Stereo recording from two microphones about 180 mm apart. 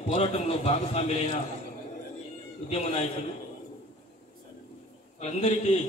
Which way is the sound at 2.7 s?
35° left (ahead or behind).